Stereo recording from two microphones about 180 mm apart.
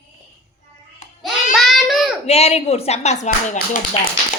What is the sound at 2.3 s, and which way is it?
Speech, 35° left (ahead or behind).